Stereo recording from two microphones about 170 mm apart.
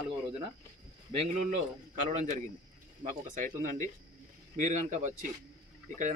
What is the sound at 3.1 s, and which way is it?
Speech, 50° right (ahead or behind).